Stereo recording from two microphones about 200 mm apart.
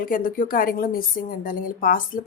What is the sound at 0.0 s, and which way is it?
A woman's voice, 45° left (ahead or behind).